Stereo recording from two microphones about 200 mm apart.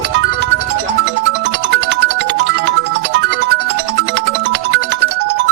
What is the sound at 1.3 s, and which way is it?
Music, 60° right (ahead or behind).